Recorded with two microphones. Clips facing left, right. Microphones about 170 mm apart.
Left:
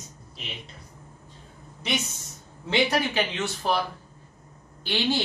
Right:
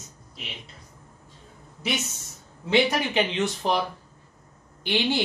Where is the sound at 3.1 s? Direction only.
20° right (ahead or behind).